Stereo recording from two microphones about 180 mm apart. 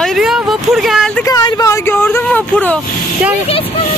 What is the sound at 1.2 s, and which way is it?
Speech, 20° left (ahead or behind).